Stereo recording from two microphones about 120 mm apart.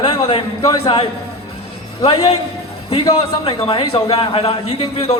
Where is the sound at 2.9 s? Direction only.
50° left (ahead or behind).